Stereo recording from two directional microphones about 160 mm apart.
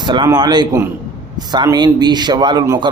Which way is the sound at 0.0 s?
30° right (ahead or behind).